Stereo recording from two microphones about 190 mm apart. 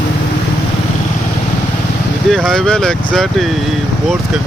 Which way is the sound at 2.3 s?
Centre (ahead or behind).